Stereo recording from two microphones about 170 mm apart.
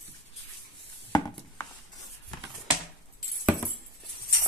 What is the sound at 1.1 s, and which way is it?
Chopping, 20° left (ahead or behind).